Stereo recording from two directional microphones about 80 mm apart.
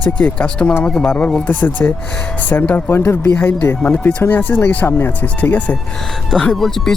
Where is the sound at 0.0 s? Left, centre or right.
Centre.